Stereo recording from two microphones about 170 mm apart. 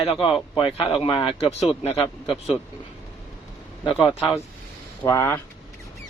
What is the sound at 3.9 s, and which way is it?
Speech, centre (ahead or behind).